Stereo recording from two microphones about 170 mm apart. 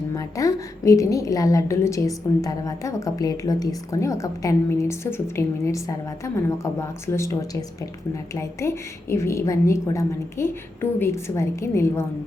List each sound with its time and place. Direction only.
0.1 s a woman's voice: 20° left (ahead or behind)